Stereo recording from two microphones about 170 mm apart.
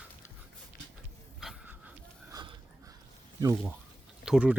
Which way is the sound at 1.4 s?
5° right (ahead or behind).